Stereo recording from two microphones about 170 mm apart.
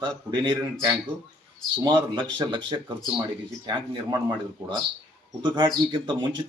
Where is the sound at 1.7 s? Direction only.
25° right (ahead or behind).